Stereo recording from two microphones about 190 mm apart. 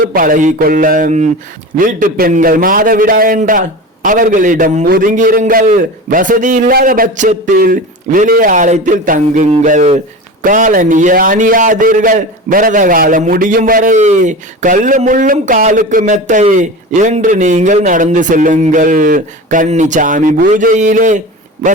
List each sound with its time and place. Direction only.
0.0 s a man's voice: 50° right (ahead or behind)